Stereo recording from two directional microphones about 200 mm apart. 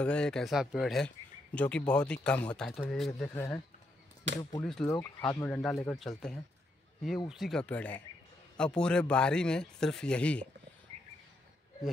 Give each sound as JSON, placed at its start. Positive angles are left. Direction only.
{"t": 0.0, "sound": "speech", "side_deg": 5}
{"t": 4.8, "sound": "speech", "side_deg": 10}